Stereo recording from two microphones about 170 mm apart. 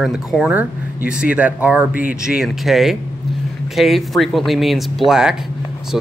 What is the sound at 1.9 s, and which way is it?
Speech, 55° left (ahead or behind).